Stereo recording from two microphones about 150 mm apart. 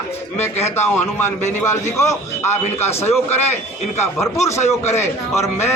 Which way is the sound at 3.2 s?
45° left (ahead or behind).